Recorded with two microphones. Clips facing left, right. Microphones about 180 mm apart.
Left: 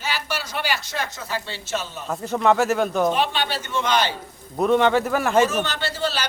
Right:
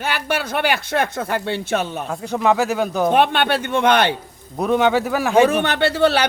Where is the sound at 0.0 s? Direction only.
55° right (ahead or behind).